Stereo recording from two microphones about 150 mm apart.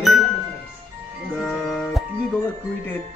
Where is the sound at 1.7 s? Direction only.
Centre (ahead or behind).